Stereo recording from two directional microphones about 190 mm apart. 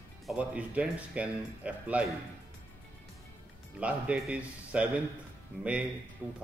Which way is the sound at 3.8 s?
5° right (ahead or behind).